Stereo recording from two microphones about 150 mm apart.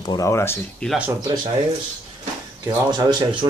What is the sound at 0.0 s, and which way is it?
Speech, 25° left (ahead or behind).